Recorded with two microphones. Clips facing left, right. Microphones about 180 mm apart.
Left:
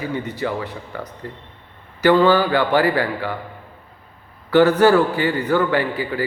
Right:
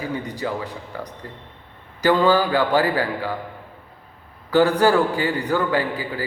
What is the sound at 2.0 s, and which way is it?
A man's voice, 15° right (ahead or behind).